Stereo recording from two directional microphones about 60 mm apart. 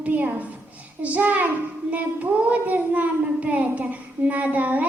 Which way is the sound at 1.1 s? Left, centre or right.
Right.